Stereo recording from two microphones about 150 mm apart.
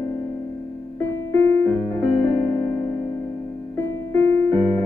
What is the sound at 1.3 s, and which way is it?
Music, 15° left (ahead or behind).